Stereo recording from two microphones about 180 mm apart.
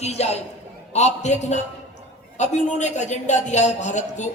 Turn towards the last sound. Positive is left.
turn(degrees=40)  # may be behind; listen again after turning